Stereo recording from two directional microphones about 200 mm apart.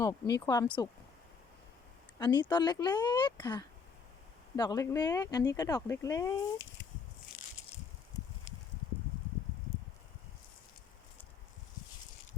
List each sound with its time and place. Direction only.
0.0 s speech: 15° left (ahead or behind)
2.1 s speech: 20° left (ahead or behind)